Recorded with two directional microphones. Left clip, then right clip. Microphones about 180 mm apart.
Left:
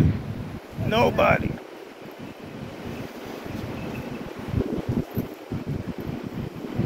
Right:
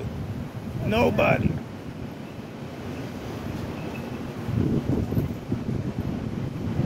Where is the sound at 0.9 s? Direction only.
30° right (ahead or behind).